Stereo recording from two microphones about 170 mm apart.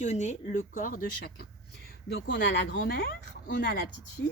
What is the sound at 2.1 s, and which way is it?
Speech, 85° left.